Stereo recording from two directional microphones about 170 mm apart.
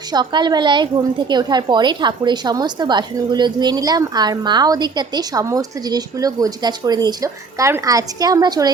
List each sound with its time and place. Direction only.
0.1 s a woman's voice: 25° right (ahead or behind)